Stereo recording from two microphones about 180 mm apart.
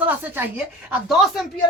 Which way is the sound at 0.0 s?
10° right (ahead or behind).